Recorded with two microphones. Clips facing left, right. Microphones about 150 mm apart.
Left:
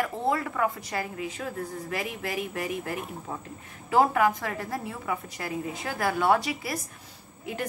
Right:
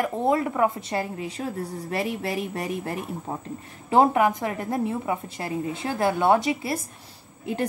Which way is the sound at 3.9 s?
20° right (ahead or behind).